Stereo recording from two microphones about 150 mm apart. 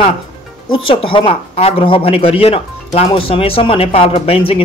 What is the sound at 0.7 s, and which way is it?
Speech, 35° left (ahead or behind).